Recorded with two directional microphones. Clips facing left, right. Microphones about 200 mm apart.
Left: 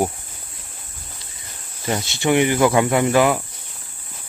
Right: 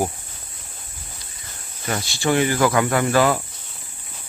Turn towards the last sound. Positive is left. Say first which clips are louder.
# left 2 dB
turn(degrees=15)  # may be behind; listen again after turning